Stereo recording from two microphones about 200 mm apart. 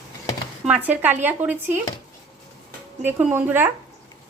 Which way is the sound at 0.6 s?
10° right (ahead or behind).